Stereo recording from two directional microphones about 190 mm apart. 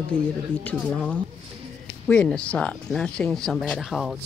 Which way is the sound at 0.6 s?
5° left (ahead or behind).